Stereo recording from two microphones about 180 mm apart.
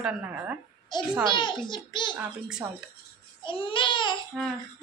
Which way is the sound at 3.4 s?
30° left (ahead or behind).